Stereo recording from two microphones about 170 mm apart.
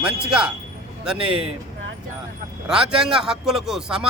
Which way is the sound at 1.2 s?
30° right (ahead or behind).